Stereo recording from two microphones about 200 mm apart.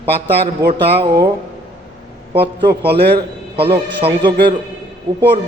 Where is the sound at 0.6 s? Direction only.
55° right (ahead or behind).